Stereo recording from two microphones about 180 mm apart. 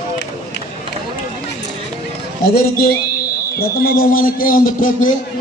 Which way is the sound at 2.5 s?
55° left (ahead or behind).